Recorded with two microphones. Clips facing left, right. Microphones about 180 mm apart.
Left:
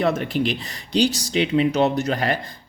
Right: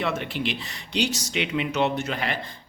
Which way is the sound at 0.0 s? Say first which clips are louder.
Left 6 dB; 40° left (ahead or behind).